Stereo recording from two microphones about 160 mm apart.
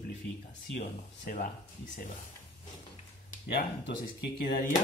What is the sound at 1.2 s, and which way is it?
Speech, 60° left (ahead or behind).